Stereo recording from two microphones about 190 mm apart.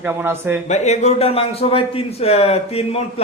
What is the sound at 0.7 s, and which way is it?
A man's voice, 35° left (ahead or behind).